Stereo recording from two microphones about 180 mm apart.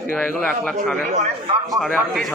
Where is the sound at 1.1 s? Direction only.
40° right (ahead or behind).